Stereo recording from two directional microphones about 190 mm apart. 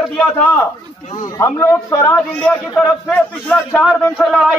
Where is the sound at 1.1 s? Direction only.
15° left (ahead or behind).